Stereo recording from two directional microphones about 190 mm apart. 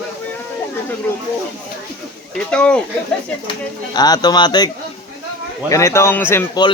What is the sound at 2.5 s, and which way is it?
Speech, 5° left (ahead or behind).